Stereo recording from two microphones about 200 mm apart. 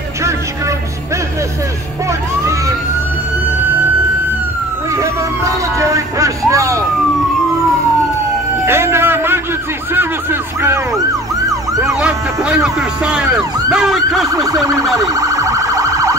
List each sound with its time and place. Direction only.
4.9 s a sound: 15° right (ahead or behind)
8.6 s vehicle: 10° right (ahead or behind)
9.9 s music: 10° right (ahead or behind)
11.9 s emergency vehicle: 5° right (ahead or behind)
14.3 s emergency vehicle: 15° right (ahead or behind)